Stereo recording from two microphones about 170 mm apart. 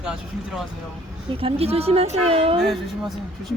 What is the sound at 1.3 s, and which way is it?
Speech, 35° right (ahead or behind).